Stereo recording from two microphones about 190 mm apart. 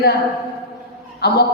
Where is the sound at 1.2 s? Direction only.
55° left (ahead or behind).